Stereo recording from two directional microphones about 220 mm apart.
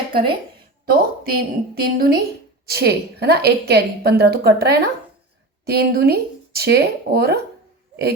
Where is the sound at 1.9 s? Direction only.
45° right (ahead or behind).